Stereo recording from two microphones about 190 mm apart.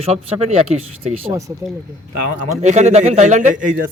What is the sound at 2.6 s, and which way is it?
A man's voice, 40° right (ahead or behind).